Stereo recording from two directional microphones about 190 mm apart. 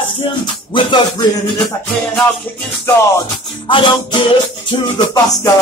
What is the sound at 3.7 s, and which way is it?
Music, 25° left (ahead or behind).